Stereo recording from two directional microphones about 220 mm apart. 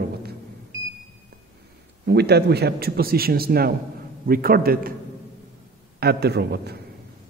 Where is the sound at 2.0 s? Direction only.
50° right (ahead or behind).